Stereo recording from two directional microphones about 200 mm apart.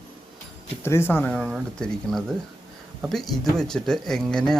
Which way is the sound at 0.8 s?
10° left (ahead or behind).